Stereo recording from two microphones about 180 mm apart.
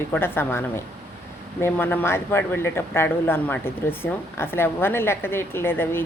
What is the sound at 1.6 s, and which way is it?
Speech, 10° left (ahead or behind).